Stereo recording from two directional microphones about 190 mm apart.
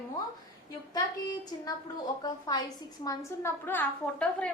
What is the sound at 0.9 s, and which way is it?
A woman's voice, 20° left (ahead or behind).